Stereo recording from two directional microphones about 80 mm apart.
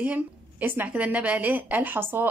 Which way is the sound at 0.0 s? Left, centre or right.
Right.